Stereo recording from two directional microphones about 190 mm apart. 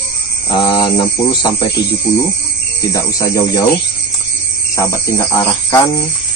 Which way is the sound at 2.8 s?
15° left (ahead or behind).